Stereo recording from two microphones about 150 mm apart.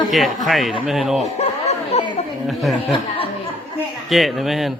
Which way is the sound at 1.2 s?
45° left (ahead or behind).